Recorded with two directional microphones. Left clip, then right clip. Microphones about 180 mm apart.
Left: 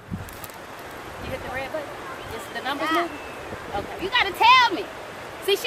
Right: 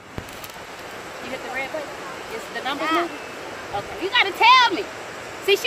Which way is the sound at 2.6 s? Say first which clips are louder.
Right 1 dB; centre (ahead or behind).